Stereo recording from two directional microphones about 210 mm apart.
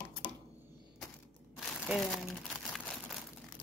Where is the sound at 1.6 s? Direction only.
Centre (ahead or behind).